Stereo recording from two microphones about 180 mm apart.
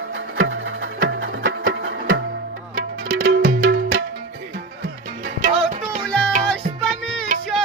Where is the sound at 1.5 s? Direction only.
90° right.